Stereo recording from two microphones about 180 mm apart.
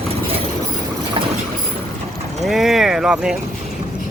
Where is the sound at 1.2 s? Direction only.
30° right (ahead or behind).